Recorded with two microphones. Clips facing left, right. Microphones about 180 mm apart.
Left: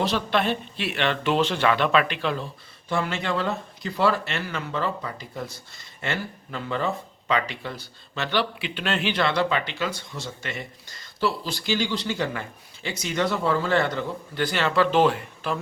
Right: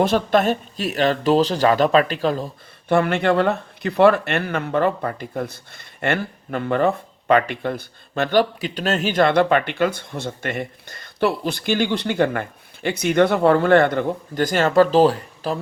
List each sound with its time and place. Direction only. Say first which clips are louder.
0.0 s speech: right 7 dB; 50° right (ahead or behind)
2.9 s speech: right 9 dB; 60° right (ahead or behind); by 15.5 s 35° right (ahead or behind)